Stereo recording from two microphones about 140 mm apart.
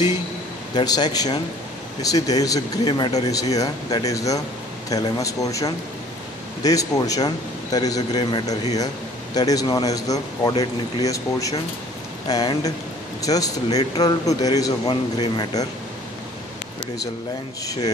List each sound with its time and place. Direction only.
0.7 s a man's voice: 30° left (ahead or behind)